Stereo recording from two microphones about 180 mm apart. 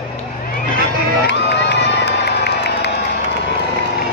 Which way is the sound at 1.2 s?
75° left (ahead or behind).